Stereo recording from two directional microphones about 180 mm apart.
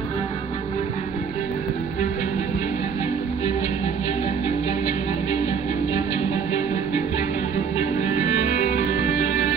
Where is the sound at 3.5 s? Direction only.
35° left (ahead or behind).